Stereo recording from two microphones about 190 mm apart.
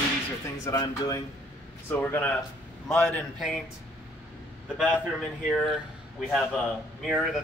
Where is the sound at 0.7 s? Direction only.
20° left (ahead or behind).